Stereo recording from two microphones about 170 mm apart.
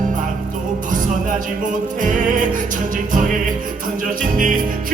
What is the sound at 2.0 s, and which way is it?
Music, 50° right (ahead or behind).